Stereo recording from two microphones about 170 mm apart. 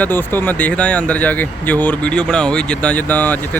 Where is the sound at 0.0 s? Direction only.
10° left (ahead or behind).